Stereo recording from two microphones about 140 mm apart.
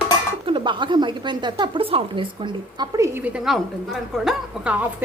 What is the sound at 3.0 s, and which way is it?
A woman's voice, 20° right (ahead or behind).